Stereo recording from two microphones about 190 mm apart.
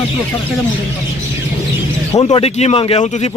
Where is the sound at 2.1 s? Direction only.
30° left (ahead or behind).